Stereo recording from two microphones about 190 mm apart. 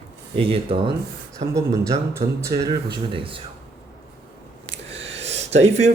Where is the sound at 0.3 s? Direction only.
30° right (ahead or behind).